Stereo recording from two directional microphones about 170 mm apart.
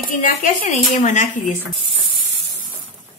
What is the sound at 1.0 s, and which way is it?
Speech, 45° left (ahead or behind).